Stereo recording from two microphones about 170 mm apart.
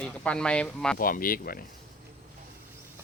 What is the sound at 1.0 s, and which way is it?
Speech, 55° left (ahead or behind).